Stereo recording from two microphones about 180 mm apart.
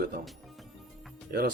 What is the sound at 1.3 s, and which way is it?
Speech, 55° right (ahead or behind).